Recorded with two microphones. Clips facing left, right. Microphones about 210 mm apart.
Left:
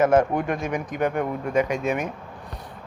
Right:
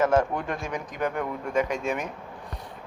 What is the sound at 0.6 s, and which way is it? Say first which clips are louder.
Speech: left 5 dB; 55° left (ahead or behind).